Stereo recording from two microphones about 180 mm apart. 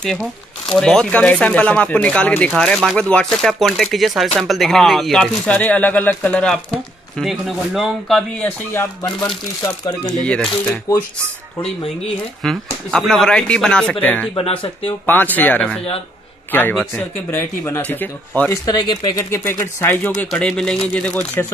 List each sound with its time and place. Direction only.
0.0 s speech: centre (ahead or behind)
10.1 s speech: 5° left (ahead or behind)
12.4 s speech: centre (ahead or behind)
14.3 s speech: 30° left (ahead or behind)
15.0 s speech: 10° left (ahead or behind)
18.7 s speech: 20° left (ahead or behind)